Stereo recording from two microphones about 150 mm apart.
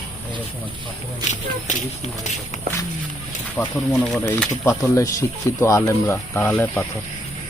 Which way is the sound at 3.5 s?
10° left (ahead or behind).